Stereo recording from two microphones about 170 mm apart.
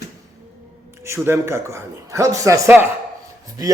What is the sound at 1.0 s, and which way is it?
A man's voice, 15° right (ahead or behind).